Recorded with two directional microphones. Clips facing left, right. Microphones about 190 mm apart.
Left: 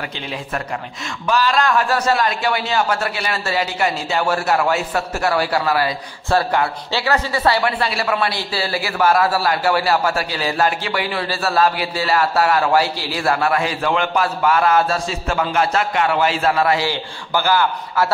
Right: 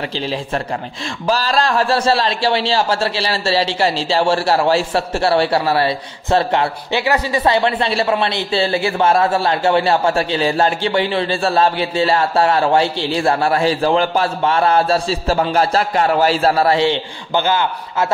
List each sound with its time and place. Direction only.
0.1 s a man's voice: 30° right (ahead or behind)